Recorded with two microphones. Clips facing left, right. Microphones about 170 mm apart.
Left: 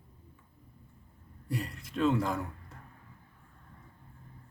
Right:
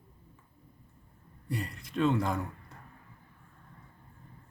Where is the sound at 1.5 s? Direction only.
5° left (ahead or behind).